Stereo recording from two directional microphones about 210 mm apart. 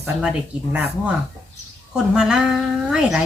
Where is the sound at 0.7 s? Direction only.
5° right (ahead or behind).